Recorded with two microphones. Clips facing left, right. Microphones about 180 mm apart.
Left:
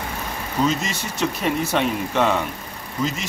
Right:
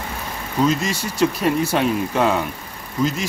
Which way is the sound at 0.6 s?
Centre (ahead or behind).